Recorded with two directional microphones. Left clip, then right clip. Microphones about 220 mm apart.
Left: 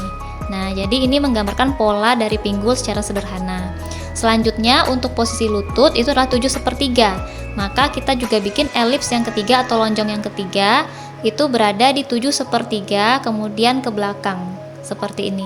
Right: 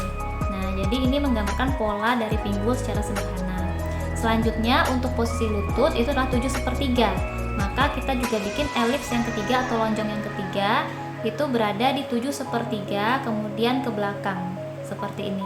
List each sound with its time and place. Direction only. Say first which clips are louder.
0.5 s speech: left 9 dB; 45° left (ahead or behind)
4.2 s speech: left 8 dB; 45° left (ahead or behind)